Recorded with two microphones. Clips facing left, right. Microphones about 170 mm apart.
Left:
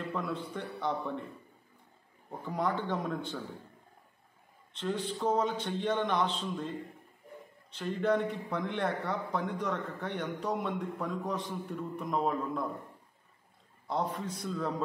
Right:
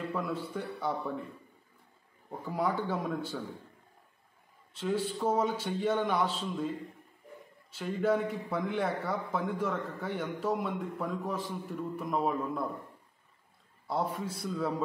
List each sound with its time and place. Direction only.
0.1 s a man's voice: 5° right (ahead or behind)
2.4 s a man's voice: 5° right (ahead or behind)
4.7 s a man's voice: 5° right (ahead or behind)
7.7 s a man's voice: 5° right (ahead or behind)
13.8 s a man's voice: 5° right (ahead or behind)